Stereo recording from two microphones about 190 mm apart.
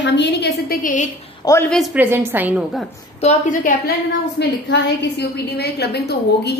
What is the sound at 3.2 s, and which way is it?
Speech, 45° left (ahead or behind).